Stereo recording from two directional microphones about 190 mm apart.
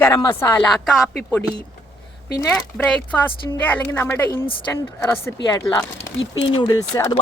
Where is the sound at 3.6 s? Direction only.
10° left (ahead or behind).